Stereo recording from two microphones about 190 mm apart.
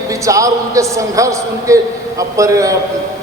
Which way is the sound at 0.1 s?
15° right (ahead or behind).